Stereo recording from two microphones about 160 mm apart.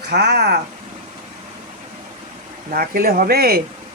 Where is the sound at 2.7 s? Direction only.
65° right (ahead or behind).